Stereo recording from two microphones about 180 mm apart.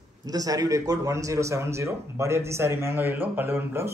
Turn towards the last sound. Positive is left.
turn(degrees=-15)  # may be behind; listen again after turning